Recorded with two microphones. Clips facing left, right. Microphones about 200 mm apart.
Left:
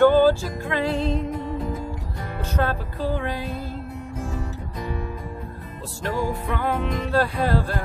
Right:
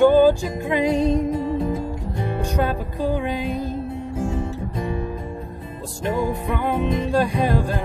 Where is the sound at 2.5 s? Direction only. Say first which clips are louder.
Left 2 dB; 15° right (ahead or behind).